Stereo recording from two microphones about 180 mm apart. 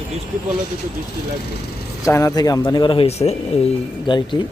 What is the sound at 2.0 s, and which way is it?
Speech, 15° left (ahead or behind).